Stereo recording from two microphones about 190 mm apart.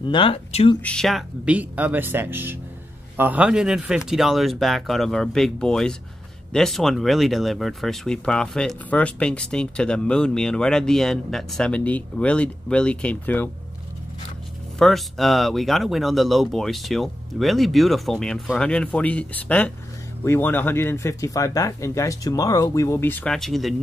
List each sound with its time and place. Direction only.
0.0 s speech: 25° left (ahead or behind)
0.8 s speech: centre (ahead or behind)
14.8 s speech: centre (ahead or behind)